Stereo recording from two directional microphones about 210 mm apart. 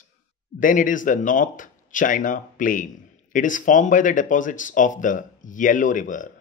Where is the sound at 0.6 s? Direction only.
40° left (ahead or behind).